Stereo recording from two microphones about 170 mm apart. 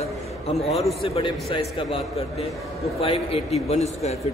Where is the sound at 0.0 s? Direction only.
40° left (ahead or behind).